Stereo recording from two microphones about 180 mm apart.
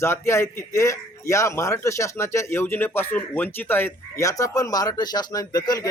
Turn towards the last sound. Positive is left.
turn(degrees=20)  # may be behind; listen again after turning